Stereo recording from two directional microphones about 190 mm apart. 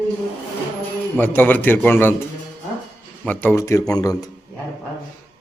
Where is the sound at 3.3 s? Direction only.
10° left (ahead or behind).